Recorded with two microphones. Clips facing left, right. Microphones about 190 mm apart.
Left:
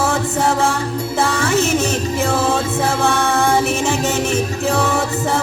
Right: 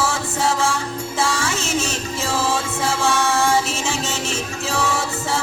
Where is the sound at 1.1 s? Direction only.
60° left (ahead or behind).